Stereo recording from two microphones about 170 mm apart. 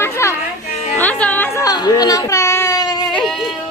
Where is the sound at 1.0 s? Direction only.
10° left (ahead or behind).